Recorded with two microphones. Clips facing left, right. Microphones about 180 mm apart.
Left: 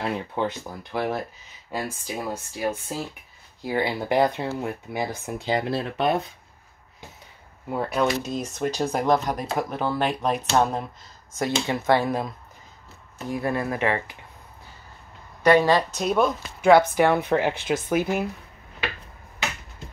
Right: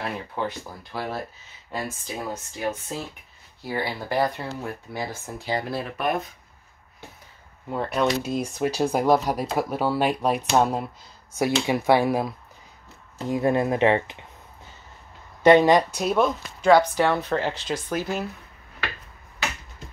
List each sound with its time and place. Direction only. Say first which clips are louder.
0.3 s speech: left 2 dB; 20° left (ahead or behind)
1.7 s speech: left 1 dB; 10° left (ahead or behind); by 6.3 s 30° left (ahead or behind)
7.7 s speech: even; 5° left (ahead or behind)
13.2 s speech: right 4 dB; 20° right (ahead or behind)
15.4 s speech: right 3 dB; 20° right (ahead or behind); by 16.7 s centre (ahead or behind)
16.7 s speech: left 1 dB; 10° left (ahead or behind)